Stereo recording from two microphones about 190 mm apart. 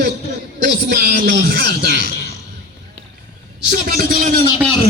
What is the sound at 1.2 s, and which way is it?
Speech, 60° right (ahead or behind).